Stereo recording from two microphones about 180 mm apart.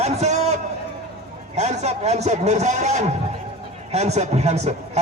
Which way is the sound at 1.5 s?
40° right (ahead or behind).